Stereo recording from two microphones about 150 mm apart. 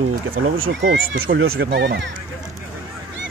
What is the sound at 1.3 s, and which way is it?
Speech, 75° right (ahead or behind).